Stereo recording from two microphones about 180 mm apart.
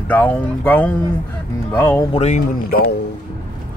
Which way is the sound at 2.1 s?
40° left (ahead or behind).